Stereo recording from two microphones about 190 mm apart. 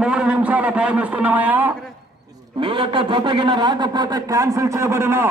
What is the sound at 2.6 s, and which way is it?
Speech, 25° right (ahead or behind).